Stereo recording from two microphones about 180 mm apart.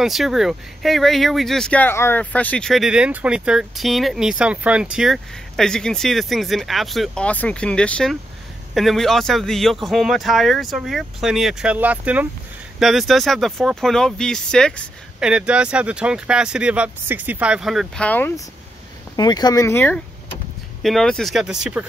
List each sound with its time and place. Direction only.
0.0 s speech: centre (ahead or behind)
19.1 s speech: 20° left (ahead or behind)
20.8 s speech: centre (ahead or behind)